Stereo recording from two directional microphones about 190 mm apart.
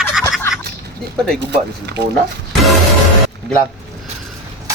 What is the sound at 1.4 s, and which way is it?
Speech, 60° right (ahead or behind).